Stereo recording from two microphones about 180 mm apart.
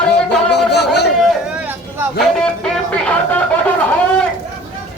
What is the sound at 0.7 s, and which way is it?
Chatter, 65° left (ahead or behind).